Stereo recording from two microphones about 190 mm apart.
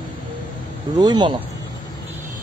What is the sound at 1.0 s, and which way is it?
Speech, 20° right (ahead or behind).